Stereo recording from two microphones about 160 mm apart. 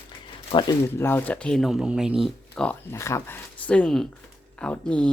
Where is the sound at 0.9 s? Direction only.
15° left (ahead or behind).